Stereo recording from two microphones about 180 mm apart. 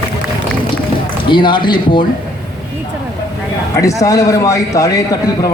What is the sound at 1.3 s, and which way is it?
Speech, 25° left (ahead or behind).